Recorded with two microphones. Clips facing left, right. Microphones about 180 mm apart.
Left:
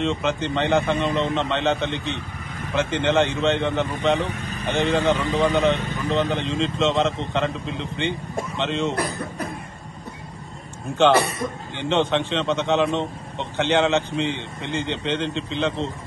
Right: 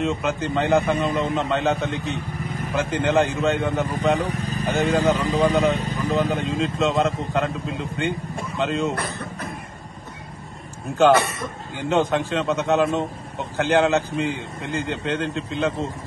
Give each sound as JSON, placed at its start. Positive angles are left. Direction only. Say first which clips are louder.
{"t": 0.0, "sound": "a man's voice", "louder": "even", "side_deg": 0}
{"t": 4.2, "sound": "vehicle", "louder": "right 2 dB", "side_deg": -35}
{"t": 5.1, "sound": "a man's voice", "louder": "right 1 dB", "side_deg": -35}
{"t": 6.0, "sound": "a man's voice", "louder": "even", "side_deg": 0}
{"t": 11.7, "sound": "a man's voice", "louder": "right 1 dB", "side_deg": -5}